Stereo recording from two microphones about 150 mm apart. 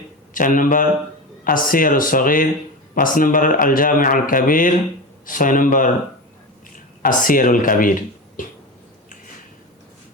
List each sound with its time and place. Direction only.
0.3 s speech: 60° left (ahead or behind)
7.0 s speech: 65° left (ahead or behind)